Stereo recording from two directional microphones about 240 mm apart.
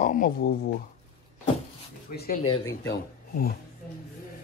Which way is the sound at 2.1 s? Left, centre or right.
Left.